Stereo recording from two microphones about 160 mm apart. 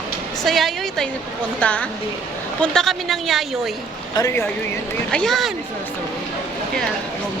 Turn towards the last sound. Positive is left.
turn(degrees=0)  # may be behind; listen again after turning